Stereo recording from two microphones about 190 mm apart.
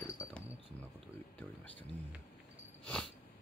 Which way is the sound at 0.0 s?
15° left (ahead or behind).